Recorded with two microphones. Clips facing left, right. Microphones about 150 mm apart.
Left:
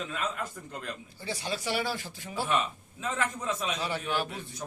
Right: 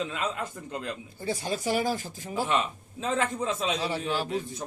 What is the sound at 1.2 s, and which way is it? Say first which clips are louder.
Speech: right 4 dB; 45° right (ahead or behind).